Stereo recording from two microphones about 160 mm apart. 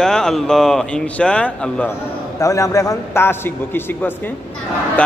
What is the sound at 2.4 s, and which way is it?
A man's voice, 20° left (ahead or behind).